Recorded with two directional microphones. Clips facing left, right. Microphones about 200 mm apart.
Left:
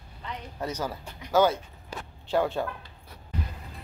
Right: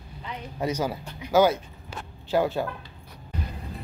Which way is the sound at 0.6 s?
10° right (ahead or behind).